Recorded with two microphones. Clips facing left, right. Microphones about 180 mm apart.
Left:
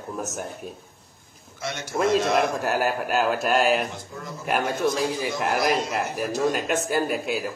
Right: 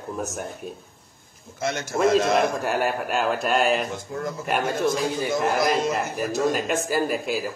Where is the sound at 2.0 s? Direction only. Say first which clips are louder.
Right 2 dB; centre (ahead or behind).